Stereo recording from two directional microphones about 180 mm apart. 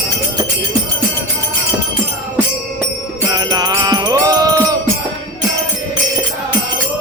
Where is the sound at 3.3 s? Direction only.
20° right (ahead or behind).